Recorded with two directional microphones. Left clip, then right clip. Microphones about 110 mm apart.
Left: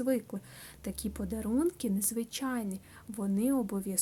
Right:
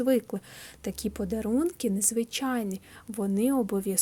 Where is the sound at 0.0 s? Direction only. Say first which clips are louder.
Right 6 dB; 35° right (ahead or behind).